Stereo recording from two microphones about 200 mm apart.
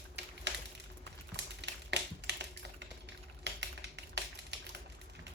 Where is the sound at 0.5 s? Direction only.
60° right (ahead or behind).